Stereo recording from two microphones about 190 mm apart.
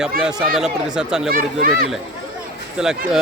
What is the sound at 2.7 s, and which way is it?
Speech, 5° right (ahead or behind).